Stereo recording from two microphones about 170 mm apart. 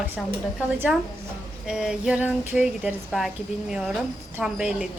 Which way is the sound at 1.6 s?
5° right (ahead or behind).